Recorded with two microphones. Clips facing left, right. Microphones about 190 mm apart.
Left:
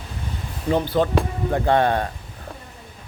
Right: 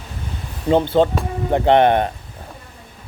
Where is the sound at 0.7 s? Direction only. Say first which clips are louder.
Right 4 dB; 25° right (ahead or behind).